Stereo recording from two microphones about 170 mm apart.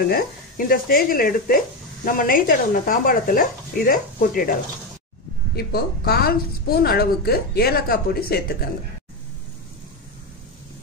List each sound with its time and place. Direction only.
0.1 s a woman's voice: 60° left (ahead or behind)
5.6 s a woman's voice: 65° left (ahead or behind)